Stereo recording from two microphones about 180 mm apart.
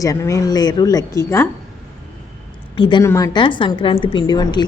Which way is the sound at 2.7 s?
25° left (ahead or behind).